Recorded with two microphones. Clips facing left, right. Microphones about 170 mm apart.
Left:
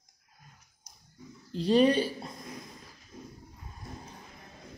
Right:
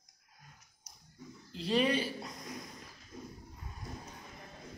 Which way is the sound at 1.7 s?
30° left (ahead or behind).